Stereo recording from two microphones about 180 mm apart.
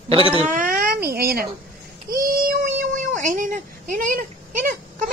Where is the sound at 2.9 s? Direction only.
45° right (ahead or behind).